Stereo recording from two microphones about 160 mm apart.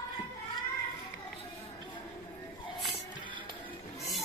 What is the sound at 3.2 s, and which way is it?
Music, 30° right (ahead or behind).